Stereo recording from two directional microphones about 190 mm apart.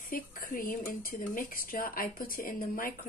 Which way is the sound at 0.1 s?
50° left (ahead or behind).